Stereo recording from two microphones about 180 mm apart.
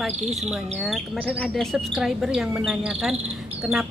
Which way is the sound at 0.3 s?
Centre (ahead or behind).